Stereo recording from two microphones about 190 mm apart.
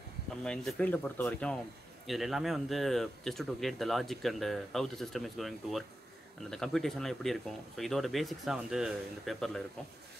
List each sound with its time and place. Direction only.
0.4 s speech: 5° left (ahead or behind)